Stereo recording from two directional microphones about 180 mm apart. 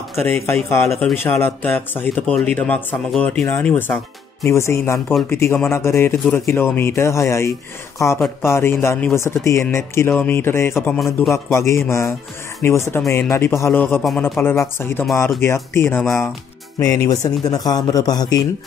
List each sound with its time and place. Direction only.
0.2 s speech: 15° left (ahead or behind)
8.5 s a man's voice: 15° left (ahead or behind)